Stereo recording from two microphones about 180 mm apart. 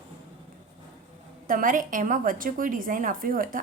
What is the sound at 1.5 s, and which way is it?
A woman's voice, 50° right (ahead or behind).